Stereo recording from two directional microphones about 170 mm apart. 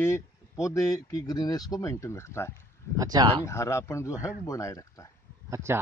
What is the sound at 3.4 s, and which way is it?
Speech, 15° left (ahead or behind).